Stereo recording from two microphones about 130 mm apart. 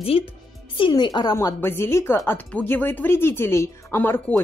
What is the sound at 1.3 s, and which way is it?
A woman's voice, 20° left (ahead or behind).